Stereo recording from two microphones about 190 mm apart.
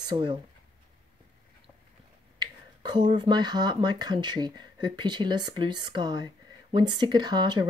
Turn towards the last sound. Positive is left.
turn(degrees=-20)  # may be behind; listen again after turning